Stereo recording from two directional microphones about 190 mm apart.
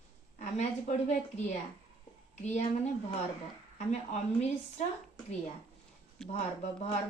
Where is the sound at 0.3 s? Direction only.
35° left (ahead or behind).